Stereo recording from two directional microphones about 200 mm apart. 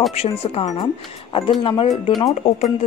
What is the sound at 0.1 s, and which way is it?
Speech, 30° left (ahead or behind).